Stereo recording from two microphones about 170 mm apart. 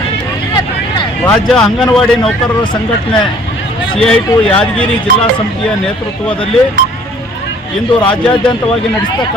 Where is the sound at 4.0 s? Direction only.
5° left (ahead or behind).